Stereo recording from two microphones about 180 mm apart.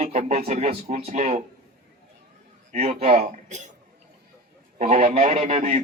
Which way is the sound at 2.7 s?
35° right (ahead or behind).